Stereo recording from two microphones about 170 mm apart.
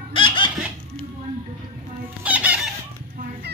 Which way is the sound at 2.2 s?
10° right (ahead or behind).